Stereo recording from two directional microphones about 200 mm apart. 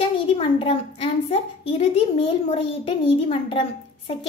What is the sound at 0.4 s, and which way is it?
A child's voice, 30° left (ahead or behind).